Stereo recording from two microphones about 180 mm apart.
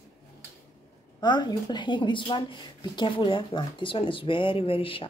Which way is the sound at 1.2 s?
25° left (ahead or behind).